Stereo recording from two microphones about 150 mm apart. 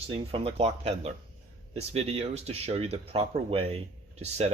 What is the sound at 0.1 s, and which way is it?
Speech, 40° right (ahead or behind).